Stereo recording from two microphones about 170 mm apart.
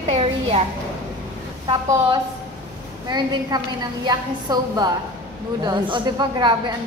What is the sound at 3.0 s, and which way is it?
A woman's voice, 25° right (ahead or behind).